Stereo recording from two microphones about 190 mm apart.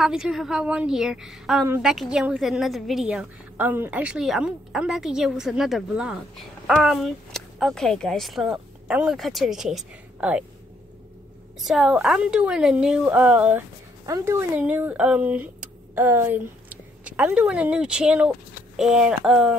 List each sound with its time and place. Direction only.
0.0 s a woman's voice: 5° right (ahead or behind)
11.6 s a woman's voice: centre (ahead or behind)